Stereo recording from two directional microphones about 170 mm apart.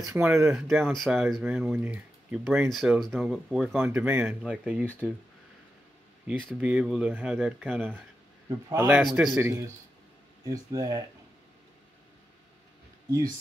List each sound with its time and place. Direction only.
0.1 s a man's voice: 15° right (ahead or behind)
6.2 s a man's voice: 5° right (ahead or behind)
9.4 s a man's voice: 15° right (ahead or behind)